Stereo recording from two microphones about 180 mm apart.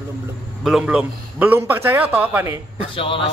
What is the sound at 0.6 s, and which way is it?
A man's voice, 5° right (ahead or behind).